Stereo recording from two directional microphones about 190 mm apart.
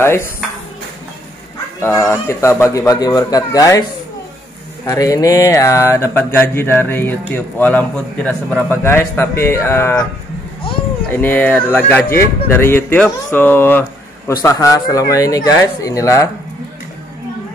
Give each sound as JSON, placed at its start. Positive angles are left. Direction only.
{"t": 0.0, "sound": "speech", "side_deg": 15}
{"t": 1.8, "sound": "speech", "side_deg": 15}
{"t": 4.8, "sound": "speech", "side_deg": 15}
{"t": 11.1, "sound": "speech", "side_deg": 10}